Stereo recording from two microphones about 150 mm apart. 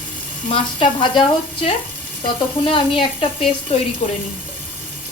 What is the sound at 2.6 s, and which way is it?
A woman's voice, 35° left (ahead or behind).